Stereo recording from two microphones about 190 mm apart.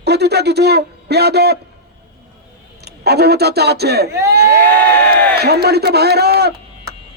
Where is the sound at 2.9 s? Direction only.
60° right (ahead or behind).